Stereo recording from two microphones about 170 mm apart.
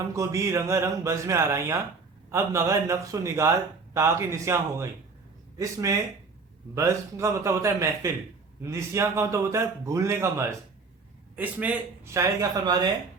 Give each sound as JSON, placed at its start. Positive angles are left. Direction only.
{"t": 0.1, "sound": "a man's voice", "side_deg": -20}